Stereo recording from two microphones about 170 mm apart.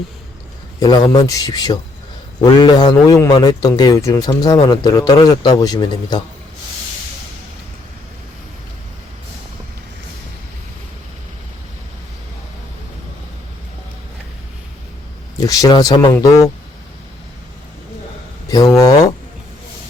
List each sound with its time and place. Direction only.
0.8 s speech: 25° left (ahead or behind)
15.4 s speech: 20° left (ahead or behind)
18.5 s speech: 20° left (ahead or behind)